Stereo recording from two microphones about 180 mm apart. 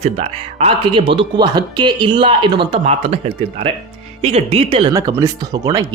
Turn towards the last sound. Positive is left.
turn(degrees=-20)  # may be behind; listen again after turning